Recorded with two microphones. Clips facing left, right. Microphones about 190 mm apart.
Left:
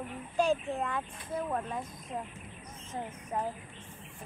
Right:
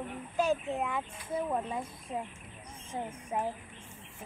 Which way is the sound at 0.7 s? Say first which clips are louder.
Right 1 dB; 10° right (ahead or behind).